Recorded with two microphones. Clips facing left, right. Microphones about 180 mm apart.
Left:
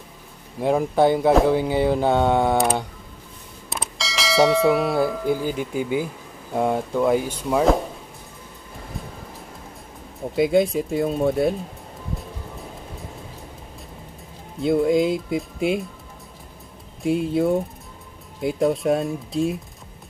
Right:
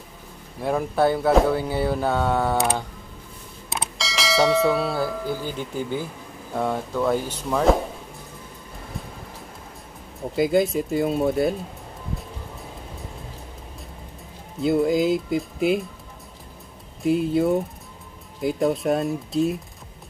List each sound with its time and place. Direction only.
0.6 s speech: 15° left (ahead or behind)
3.7 s bell: centre (ahead or behind)
4.7 s speech: 15° left (ahead or behind)
10.3 s speech: centre (ahead or behind)
14.6 s speech: centre (ahead or behind)
17.0 s speech: centre (ahead or behind)